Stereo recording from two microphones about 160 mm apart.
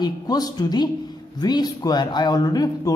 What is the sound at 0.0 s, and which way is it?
Speech, 25° left (ahead or behind).